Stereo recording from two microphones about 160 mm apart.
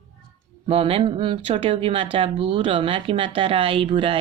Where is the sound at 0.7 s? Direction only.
35° right (ahead or behind).